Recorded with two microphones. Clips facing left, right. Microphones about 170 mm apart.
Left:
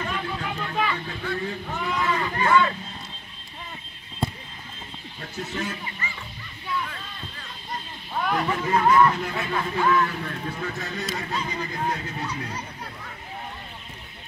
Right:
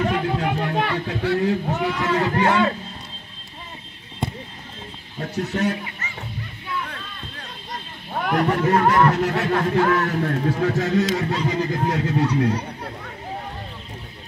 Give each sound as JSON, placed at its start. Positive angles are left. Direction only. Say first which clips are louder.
{"t": 0.0, "sound": "a sound", "louder": "right 8 dB", "side_deg": -70}
{"t": 1.8, "sound": "run", "louder": "right 5 dB", "side_deg": -75}
{"t": 5.5, "sound": "speech", "louder": "right 8 dB", "side_deg": -70}
{"t": 8.2, "sound": "speech", "louder": "right 5 dB", "side_deg": -65}